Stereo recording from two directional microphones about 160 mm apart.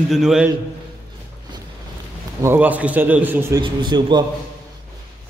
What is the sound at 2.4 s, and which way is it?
A man's voice, 15° right (ahead or behind).